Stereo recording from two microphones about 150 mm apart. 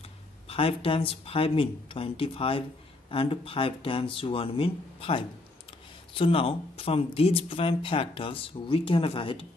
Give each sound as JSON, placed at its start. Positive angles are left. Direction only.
{"t": 0.5, "sound": "speech", "side_deg": 40}